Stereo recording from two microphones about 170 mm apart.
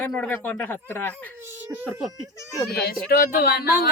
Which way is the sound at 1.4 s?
10° right (ahead or behind).